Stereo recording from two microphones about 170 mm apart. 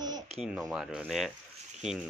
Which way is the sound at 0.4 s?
Centre (ahead or behind).